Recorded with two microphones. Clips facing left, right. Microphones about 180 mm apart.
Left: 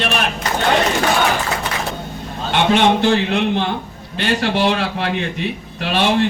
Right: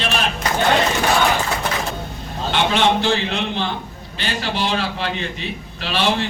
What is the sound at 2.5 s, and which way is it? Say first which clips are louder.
A man's voice: left 3 dB; 55° left (ahead or behind).